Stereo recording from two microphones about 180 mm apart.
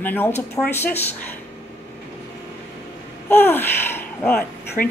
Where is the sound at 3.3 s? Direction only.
10° left (ahead or behind).